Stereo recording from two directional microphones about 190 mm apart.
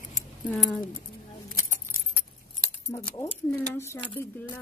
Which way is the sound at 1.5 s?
45° left (ahead or behind).